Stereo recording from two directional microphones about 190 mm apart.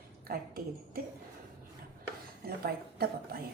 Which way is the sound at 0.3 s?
50° right (ahead or behind).